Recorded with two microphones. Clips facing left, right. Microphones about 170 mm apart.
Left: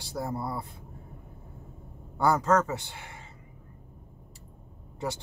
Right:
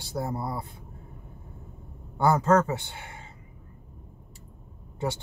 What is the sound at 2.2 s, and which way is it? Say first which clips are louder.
Speech: right 2 dB; 30° right (ahead or behind).